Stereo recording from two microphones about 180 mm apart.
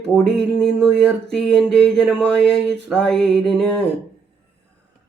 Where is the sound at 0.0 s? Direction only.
5° left (ahead or behind).